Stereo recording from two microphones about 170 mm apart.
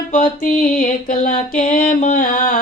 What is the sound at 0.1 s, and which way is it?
Music, 50° left (ahead or behind).